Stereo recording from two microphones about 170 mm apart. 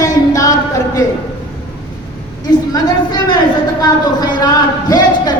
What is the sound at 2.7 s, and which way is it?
Speech, 25° left (ahead or behind).